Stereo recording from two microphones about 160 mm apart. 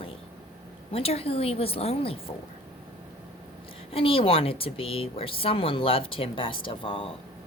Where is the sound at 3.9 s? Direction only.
35° left (ahead or behind).